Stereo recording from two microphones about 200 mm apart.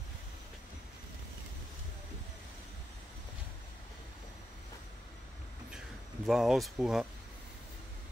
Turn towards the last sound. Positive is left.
turn(degrees=0)  # may be behind; listen again after turning